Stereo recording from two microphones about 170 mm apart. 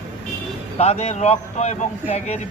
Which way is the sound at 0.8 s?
40° left (ahead or behind).